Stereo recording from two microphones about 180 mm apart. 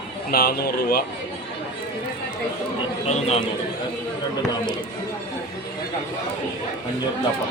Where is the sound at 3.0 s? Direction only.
35° left (ahead or behind).